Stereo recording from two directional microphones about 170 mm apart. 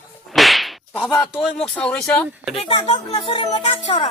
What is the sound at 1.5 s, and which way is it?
Speech, 5° left (ahead or behind).